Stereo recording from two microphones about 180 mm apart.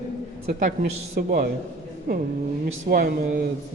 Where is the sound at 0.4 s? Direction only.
35° right (ahead or behind).